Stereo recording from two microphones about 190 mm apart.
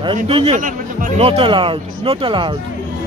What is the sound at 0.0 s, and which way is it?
Speech, 30° right (ahead or behind).